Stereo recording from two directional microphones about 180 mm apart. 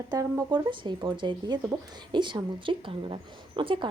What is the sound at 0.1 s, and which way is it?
A woman's voice, 20° right (ahead or behind).